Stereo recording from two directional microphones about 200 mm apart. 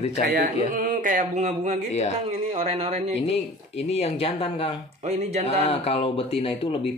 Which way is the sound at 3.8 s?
30° left (ahead or behind).